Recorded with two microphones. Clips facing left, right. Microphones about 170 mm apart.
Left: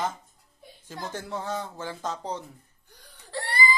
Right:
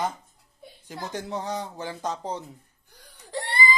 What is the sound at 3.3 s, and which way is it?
Whimper, 20° right (ahead or behind).